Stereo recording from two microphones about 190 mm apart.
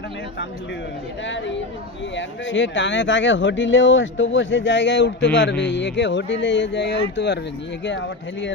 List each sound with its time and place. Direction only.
1.2 s speech: 70° left (ahead or behind)